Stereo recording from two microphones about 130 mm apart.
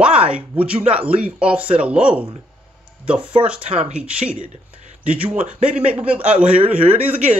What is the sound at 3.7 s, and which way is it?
Speech, 55° right (ahead or behind).